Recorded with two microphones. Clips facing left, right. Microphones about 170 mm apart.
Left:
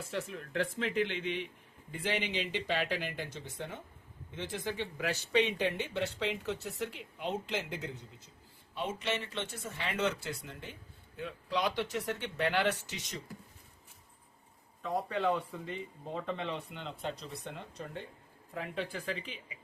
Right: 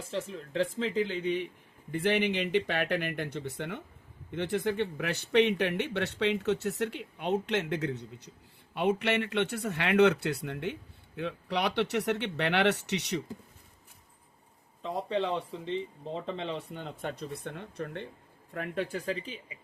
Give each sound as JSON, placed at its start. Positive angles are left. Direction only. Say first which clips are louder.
{"t": 0.2, "sound": "speech", "louder": "right 4 dB", "side_deg": -25}
{"t": 1.0, "sound": "speech", "louder": "right 5 dB", "side_deg": -40}
{"t": 1.9, "sound": "speech", "louder": "right 7 dB", "side_deg": -60}
{"t": 14.8, "sound": "speech", "louder": "right 3 dB", "side_deg": -25}
{"t": 16.7, "sound": "speech", "louder": "right 2 dB", "side_deg": -50}